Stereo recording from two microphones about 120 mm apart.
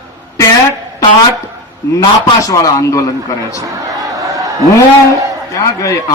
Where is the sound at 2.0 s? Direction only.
30° left (ahead or behind).